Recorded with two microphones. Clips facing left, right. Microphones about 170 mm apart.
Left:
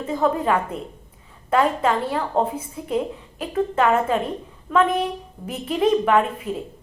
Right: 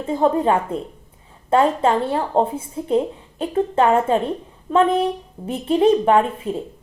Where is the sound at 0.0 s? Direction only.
30° right (ahead or behind).